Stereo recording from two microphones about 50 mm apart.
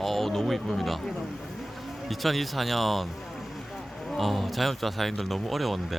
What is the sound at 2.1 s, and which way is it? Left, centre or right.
Speech, centre.